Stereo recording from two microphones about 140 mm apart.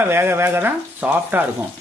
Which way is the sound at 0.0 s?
15° right (ahead or behind).